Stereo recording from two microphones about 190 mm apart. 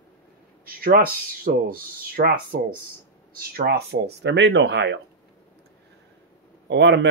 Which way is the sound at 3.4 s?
55° right (ahead or behind).